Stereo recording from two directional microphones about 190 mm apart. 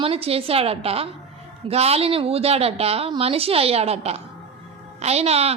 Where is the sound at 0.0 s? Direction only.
30° right (ahead or behind).